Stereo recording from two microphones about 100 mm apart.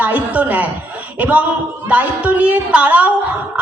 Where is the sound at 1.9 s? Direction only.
15° right (ahead or behind).